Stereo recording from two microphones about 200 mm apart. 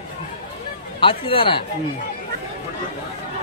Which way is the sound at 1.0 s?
25° left (ahead or behind).